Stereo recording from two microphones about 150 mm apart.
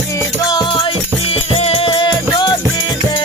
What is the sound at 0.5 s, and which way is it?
Music, 30° left (ahead or behind).